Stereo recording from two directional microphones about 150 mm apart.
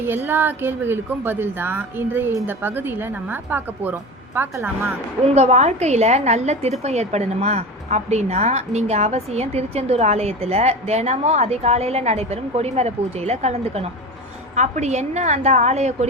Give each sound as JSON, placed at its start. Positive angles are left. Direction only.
{"t": 0.0, "sound": "speech", "side_deg": -15}
{"t": 5.2, "sound": "a woman's voice", "side_deg": -45}